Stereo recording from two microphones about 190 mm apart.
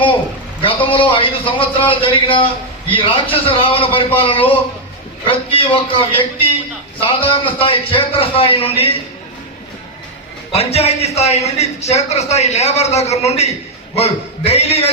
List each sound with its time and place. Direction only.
0.9 s a man's voice: 30° left (ahead or behind)
10.5 s a man's voice: 30° left (ahead or behind)